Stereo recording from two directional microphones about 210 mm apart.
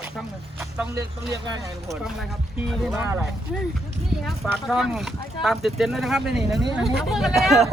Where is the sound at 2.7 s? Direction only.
Centre (ahead or behind).